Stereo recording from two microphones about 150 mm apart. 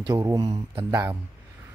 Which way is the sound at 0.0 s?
25° right (ahead or behind).